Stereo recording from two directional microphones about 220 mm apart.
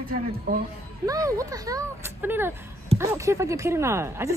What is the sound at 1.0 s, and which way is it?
Speech, 15° right (ahead or behind).